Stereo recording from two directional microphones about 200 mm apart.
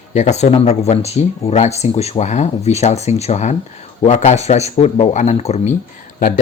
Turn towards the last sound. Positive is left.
turn(degrees=40)  # may be behind; listen again after turning